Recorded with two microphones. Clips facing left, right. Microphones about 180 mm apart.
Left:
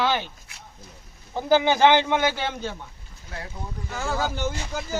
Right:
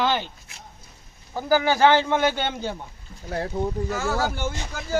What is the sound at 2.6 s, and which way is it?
Speech, 15° right (ahead or behind).